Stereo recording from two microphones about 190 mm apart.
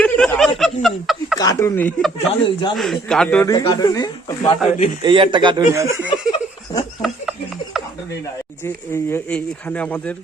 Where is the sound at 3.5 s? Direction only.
20° left (ahead or behind).